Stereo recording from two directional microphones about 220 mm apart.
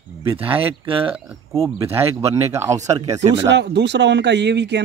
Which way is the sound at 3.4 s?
55° right (ahead or behind).